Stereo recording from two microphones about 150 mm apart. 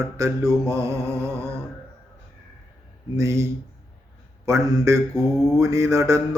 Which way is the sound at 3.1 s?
20° right (ahead or behind).